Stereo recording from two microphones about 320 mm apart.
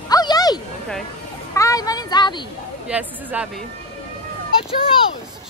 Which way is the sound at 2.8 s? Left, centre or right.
Centre.